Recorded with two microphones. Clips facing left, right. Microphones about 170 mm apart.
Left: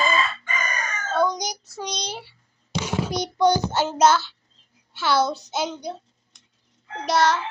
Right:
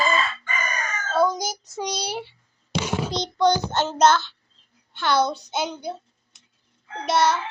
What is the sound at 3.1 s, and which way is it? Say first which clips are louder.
A child's voice: left 1 dB; 10° left (ahead or behind).